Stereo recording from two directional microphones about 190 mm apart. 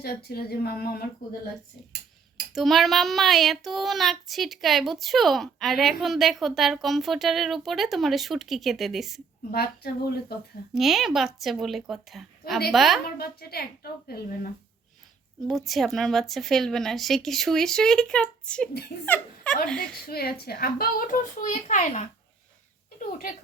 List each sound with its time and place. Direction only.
0.0 s a woman's voice: 55° left (ahead or behind)
2.5 s speech: centre (ahead or behind)
9.5 s a woman's voice: 55° left (ahead or behind)
10.8 s speech: centre (ahead or behind)
13.1 s a woman's voice: 55° left (ahead or behind)
15.4 s speech: centre (ahead or behind)
18.7 s a woman's voice: 60° left (ahead or behind)
19.0 s a sound: 10° left (ahead or behind)
19.6 s speech: 5° left (ahead or behind)
20.1 s a woman's voice: 55° left (ahead or behind)